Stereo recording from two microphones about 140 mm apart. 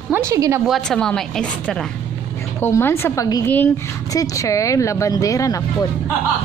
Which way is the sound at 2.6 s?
15° left (ahead or behind).